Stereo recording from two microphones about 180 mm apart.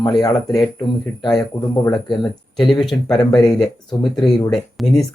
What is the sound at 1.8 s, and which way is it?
Speech, 20° left (ahead or behind).